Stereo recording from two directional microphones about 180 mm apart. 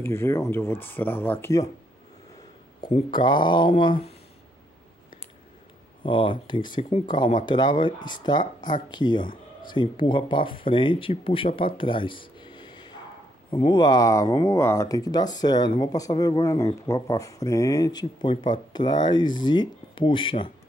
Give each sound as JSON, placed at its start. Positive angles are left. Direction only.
{"t": 0.0, "sound": "speech", "side_deg": 15}
{"t": 2.9, "sound": "speech", "side_deg": 25}
{"t": 6.0, "sound": "speech", "side_deg": 30}